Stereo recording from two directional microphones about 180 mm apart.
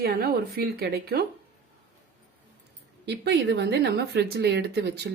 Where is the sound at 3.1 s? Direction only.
70° right (ahead or behind).